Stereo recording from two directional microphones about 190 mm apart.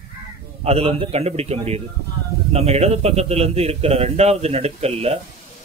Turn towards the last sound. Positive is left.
turn(degrees=-30)  # may be behind; listen again after turning